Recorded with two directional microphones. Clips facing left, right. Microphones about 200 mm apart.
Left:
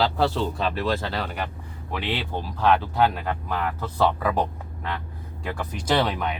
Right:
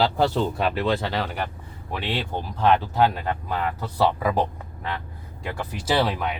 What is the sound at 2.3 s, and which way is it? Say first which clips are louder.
Speech: right 1 dB; 15° right (ahead or behind).